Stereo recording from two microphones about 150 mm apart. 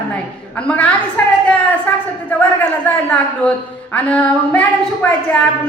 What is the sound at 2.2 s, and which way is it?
A man's voice, 10° left (ahead or behind).